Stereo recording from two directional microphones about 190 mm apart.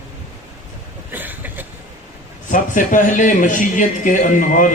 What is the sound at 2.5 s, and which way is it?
Speech, 40° left (ahead or behind).